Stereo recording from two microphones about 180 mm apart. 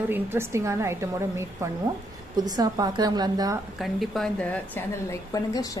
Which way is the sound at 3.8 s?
Centre (ahead or behind).